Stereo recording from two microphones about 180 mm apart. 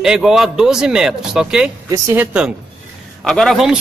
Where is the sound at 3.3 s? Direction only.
Centre (ahead or behind).